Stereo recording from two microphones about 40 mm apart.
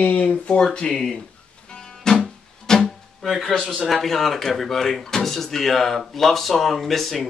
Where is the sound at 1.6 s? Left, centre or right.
Centre.